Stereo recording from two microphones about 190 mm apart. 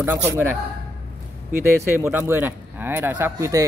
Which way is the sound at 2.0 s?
10° right (ahead or behind).